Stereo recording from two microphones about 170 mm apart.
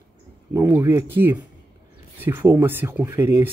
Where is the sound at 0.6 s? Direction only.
15° right (ahead or behind).